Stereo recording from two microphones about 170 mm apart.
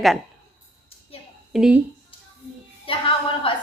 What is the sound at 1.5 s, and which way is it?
Speech, 5° right (ahead or behind).